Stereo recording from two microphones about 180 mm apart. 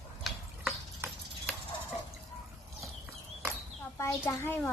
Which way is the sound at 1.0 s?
15° right (ahead or behind).